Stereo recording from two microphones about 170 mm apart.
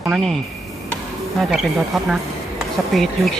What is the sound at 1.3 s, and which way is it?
A woman's voice, centre (ahead or behind).